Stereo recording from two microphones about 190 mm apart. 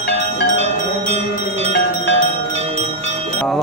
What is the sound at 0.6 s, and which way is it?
Music, 35° right (ahead or behind).